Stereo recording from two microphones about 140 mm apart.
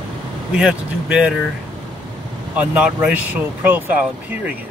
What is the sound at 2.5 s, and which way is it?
Speech, 10° right (ahead or behind).